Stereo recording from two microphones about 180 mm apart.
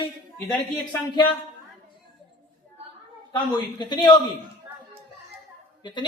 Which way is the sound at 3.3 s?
25° left (ahead or behind).